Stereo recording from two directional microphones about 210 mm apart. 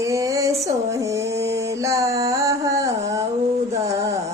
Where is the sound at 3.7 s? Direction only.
15° right (ahead or behind).